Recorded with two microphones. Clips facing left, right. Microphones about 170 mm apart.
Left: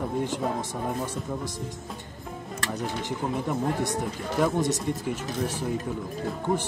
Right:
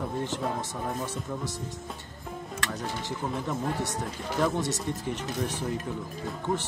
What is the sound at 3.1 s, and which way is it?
Speech, 15° left (ahead or behind).